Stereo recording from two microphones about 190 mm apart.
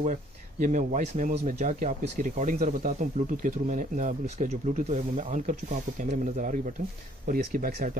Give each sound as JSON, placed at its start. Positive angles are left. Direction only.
{"t": 0.0, "sound": "speech", "side_deg": -40}